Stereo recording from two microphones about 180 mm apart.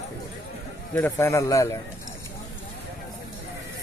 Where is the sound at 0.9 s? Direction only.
10° left (ahead or behind).